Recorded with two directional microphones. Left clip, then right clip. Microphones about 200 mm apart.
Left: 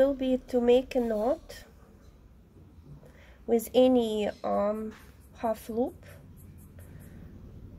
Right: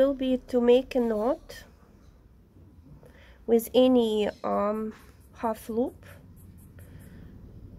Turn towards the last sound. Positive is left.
turn(degrees=-20)  # may be behind; listen again after turning